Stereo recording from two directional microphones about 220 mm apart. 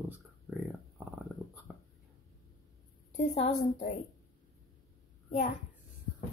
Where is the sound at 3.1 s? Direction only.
35° left (ahead or behind).